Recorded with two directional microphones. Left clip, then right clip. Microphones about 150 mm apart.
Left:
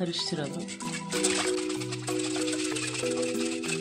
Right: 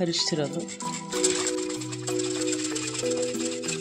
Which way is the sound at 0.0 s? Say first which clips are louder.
Right 5 dB; 40° right (ahead or behind).